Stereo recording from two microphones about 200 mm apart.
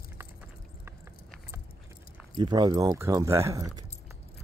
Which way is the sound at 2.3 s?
20° right (ahead or behind).